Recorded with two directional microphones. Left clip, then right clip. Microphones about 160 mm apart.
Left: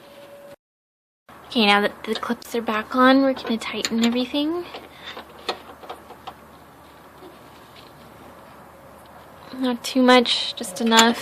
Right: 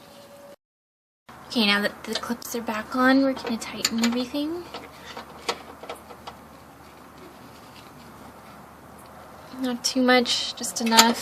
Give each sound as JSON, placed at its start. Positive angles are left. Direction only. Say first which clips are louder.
{"t": 1.5, "sound": "a woman's voice", "louder": "left 5 dB", "side_deg": 35}
{"t": 9.6, "sound": "speech", "louder": "left 4 dB", "side_deg": 40}